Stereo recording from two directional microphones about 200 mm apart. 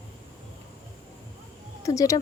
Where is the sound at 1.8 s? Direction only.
15° left (ahead or behind).